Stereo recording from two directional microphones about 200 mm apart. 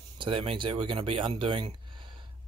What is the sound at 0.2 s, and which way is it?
Speech, 25° right (ahead or behind).